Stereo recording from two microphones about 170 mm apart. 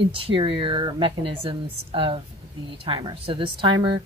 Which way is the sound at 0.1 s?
30° right (ahead or behind).